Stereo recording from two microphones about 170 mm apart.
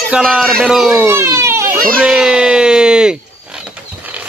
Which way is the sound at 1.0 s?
15° right (ahead or behind).